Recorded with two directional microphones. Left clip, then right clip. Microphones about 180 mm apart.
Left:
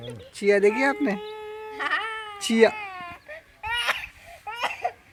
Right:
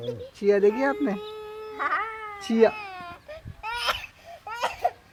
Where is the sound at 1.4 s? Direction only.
50° right (ahead or behind).